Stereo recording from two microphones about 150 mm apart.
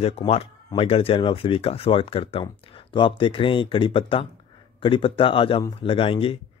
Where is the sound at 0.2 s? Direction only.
25° left (ahead or behind).